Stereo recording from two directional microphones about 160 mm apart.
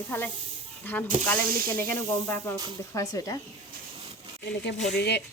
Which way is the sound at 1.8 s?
15° left (ahead or behind).